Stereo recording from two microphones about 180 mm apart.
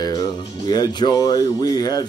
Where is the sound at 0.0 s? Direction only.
20° left (ahead or behind).